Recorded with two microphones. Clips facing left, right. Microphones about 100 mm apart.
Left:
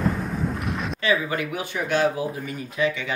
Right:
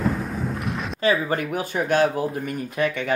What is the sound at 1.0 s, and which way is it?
Speech, 45° right (ahead or behind).